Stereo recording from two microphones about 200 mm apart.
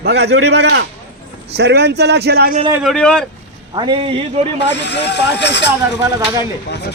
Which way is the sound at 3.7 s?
25° right (ahead or behind).